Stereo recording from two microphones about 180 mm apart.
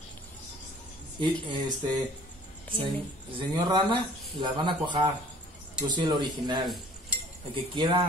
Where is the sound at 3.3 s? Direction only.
25° right (ahead or behind).